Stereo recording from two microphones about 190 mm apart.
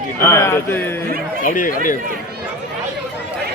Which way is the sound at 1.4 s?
45° left (ahead or behind).